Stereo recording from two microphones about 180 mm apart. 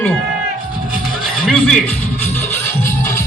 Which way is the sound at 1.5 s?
Centre (ahead or behind).